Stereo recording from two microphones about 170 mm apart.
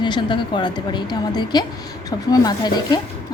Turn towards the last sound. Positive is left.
turn(degrees=25)  # may be behind; listen again after turning